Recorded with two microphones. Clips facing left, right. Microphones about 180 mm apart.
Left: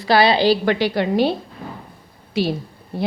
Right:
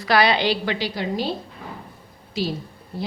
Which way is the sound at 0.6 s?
55° left (ahead or behind).